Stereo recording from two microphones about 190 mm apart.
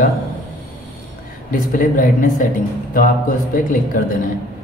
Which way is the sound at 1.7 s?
45° left (ahead or behind).